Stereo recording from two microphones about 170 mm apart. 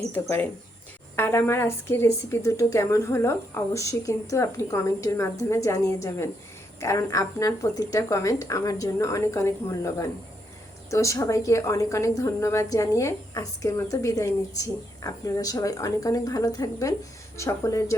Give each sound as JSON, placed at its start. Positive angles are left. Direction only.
{"t": 0.1, "sound": "a woman's voice", "side_deg": 10}